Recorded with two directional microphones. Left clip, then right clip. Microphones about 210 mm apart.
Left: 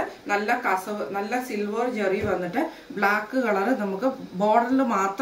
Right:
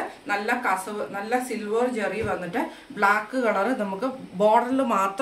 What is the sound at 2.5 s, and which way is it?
A woman's voice, 25° right (ahead or behind).